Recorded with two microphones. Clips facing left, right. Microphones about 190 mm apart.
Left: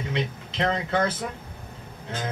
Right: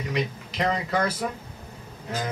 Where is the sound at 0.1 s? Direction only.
25° left (ahead or behind).